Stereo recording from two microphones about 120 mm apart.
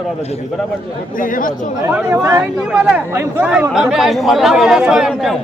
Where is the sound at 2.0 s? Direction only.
25° right (ahead or behind).